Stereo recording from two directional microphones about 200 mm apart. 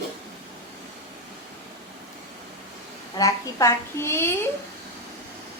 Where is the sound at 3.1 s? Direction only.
15° left (ahead or behind).